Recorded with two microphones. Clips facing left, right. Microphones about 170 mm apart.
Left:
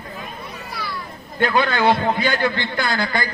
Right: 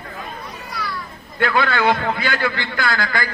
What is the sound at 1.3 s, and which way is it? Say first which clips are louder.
A man's voice: even; 20° left (ahead or behind).